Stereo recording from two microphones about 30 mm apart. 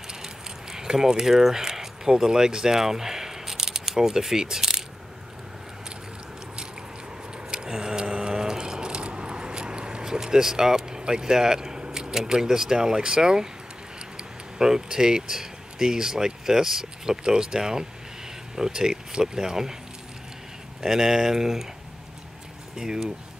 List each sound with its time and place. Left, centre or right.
0.1 s a sound: centre
1.3 s speech: centre
7.5 s a sound: right
10.0 s speech: right
12.7 s speech: right
14.6 s speech: centre
17.2 s speech: right
20.8 s speech: centre
22.8 s speech: right